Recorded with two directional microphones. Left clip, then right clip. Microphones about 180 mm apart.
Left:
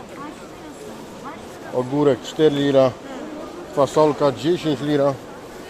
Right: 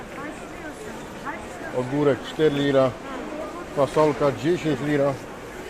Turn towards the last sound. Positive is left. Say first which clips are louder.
# left 3 dB
turn(degrees=25)  # may be behind; listen again after turning